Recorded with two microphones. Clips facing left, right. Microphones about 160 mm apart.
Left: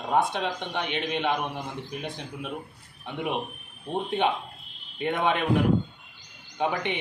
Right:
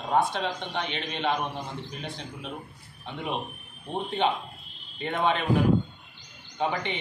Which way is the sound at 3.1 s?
10° left (ahead or behind).